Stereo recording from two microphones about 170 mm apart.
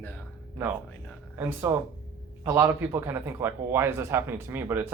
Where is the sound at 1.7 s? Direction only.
15° right (ahead or behind).